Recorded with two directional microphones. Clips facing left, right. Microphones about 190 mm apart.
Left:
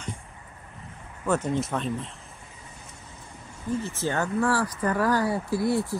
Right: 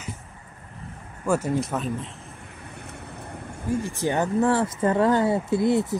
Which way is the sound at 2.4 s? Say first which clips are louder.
Right 6 dB; 65° right (ahead or behind).